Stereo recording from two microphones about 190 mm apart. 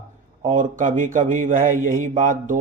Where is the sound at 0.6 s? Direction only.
45° right (ahead or behind).